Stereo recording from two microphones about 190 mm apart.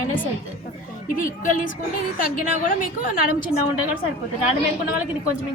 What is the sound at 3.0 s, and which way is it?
Speech, 45° left (ahead or behind).